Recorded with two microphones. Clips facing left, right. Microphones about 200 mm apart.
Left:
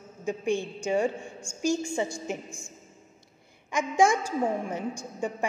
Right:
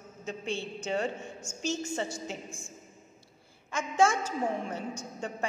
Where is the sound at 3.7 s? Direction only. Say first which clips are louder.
Left 3 dB; 15° left (ahead or behind).